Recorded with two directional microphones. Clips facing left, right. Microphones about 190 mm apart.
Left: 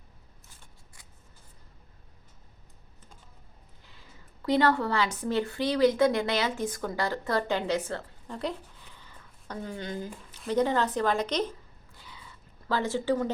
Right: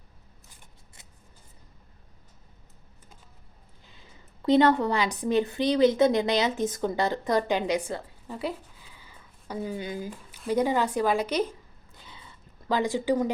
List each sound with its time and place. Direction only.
1.0 s scissors: 25° right (ahead or behind)
4.4 s speech: 20° right (ahead or behind)
11.9 s a sound: 25° right (ahead or behind)
12.6 s speech: 15° right (ahead or behind)